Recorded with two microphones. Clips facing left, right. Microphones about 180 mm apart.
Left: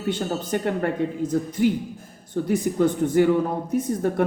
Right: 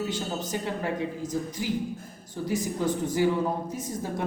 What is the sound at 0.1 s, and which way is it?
Speech, 60° left (ahead or behind).